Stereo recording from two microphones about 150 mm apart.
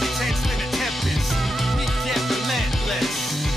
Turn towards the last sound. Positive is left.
turn(degrees=0)  # may be behind; listen again after turning